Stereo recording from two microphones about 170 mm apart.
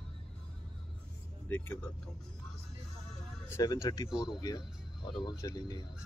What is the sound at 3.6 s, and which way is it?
Speech, 25° left (ahead or behind).